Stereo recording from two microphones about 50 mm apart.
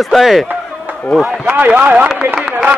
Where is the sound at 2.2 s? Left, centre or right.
Right.